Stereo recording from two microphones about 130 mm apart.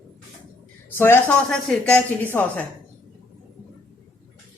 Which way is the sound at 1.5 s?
5° left (ahead or behind).